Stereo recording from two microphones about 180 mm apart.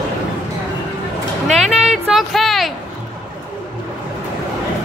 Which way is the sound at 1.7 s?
Centre (ahead or behind).